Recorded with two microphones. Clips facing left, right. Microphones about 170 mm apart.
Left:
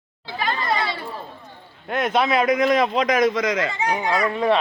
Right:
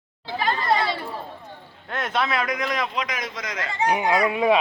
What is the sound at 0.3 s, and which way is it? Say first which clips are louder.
Chatter: right 1 dB; 35° right (ahead or behind).